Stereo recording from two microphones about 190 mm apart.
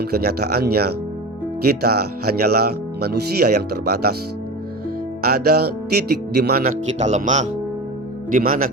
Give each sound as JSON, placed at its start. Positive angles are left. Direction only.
{"t": 0.0, "sound": "speech", "side_deg": -55}
{"t": 5.2, "sound": "speech", "side_deg": -55}